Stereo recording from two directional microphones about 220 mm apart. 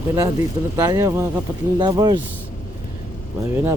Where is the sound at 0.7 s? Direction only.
15° right (ahead or behind).